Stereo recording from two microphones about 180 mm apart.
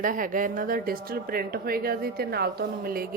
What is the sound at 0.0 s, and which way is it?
Speech, 50° right (ahead or behind).